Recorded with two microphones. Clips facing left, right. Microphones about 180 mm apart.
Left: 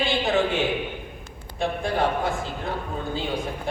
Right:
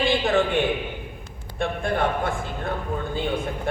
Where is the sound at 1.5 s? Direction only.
55° right (ahead or behind).